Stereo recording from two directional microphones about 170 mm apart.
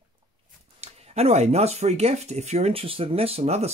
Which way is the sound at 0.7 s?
40° right (ahead or behind).